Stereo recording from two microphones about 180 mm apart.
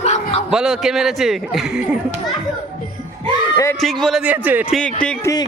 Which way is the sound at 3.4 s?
20° left (ahead or behind).